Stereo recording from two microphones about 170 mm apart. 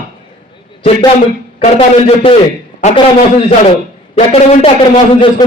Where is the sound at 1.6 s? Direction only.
40° left (ahead or behind).